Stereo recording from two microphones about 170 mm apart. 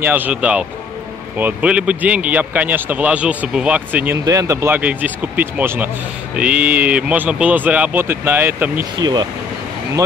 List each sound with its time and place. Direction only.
0.0 s speech: 10° right (ahead or behind)
8.9 s speech: 25° right (ahead or behind)